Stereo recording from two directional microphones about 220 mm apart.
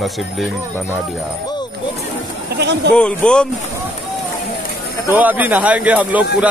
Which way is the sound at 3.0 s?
5° left (ahead or behind).